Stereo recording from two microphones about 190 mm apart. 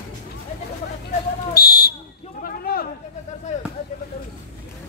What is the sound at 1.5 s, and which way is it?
Buzzer, 55° left (ahead or behind).